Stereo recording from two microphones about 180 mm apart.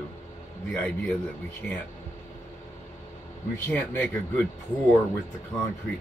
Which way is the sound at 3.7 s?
10° left (ahead or behind).